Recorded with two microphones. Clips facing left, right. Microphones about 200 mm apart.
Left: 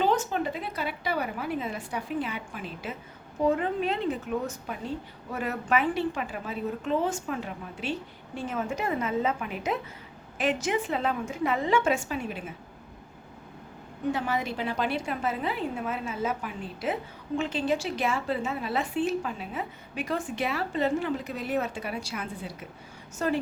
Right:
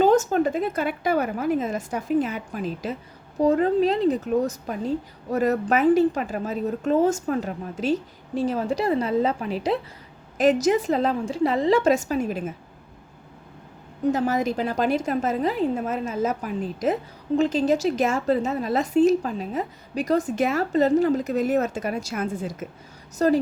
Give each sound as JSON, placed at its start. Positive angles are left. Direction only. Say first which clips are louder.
{"t": 0.0, "sound": "a woman's voice", "louder": "right 8 dB", "side_deg": -45}
{"t": 14.1, "sound": "a woman's voice", "louder": "right 7 dB", "side_deg": -40}